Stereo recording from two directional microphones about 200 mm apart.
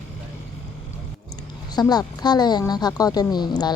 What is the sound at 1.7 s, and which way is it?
Speech, 20° left (ahead or behind).